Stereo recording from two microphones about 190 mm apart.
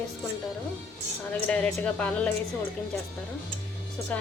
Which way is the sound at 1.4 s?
5° left (ahead or behind).